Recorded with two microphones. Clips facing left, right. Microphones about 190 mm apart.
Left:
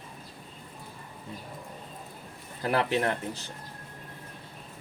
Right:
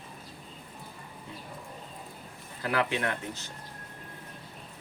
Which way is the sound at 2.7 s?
35° left (ahead or behind).